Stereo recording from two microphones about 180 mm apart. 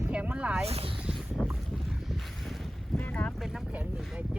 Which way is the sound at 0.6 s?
35° right (ahead or behind).